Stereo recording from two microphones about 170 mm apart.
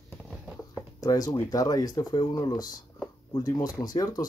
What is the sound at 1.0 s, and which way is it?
Speech, 20° left (ahead or behind).